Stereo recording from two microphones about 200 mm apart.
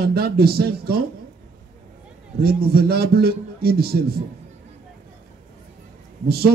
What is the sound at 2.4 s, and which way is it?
A man's voice, 50° right (ahead or behind).